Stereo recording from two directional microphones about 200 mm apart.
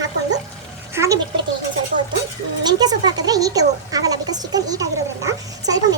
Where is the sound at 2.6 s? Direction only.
20° right (ahead or behind).